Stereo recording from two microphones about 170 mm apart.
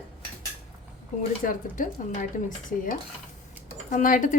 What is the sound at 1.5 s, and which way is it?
Speech, 50° left (ahead or behind).